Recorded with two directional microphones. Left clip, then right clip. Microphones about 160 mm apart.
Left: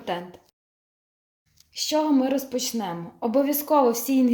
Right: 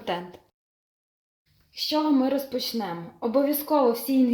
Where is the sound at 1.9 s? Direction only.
5° left (ahead or behind).